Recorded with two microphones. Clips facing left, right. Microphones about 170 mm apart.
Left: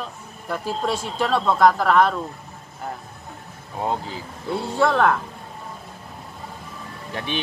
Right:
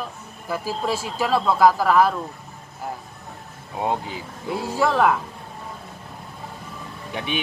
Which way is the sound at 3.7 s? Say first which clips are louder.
Right 1 dB; 15° right (ahead or behind).